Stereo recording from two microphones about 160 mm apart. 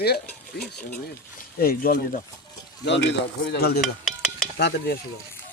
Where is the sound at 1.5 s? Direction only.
70° left (ahead or behind).